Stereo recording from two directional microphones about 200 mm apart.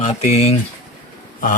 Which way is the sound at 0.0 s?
35° left (ahead or behind).